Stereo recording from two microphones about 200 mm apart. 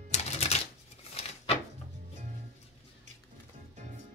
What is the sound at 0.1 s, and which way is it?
Typewriter, 30° left (ahead or behind).